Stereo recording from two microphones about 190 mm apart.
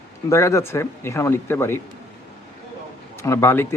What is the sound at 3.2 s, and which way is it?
Speech, 15° left (ahead or behind).